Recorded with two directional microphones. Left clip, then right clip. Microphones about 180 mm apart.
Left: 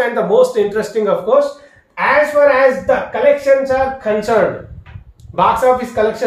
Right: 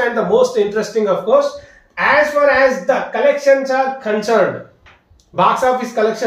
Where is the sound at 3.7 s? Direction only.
25° left (ahead or behind).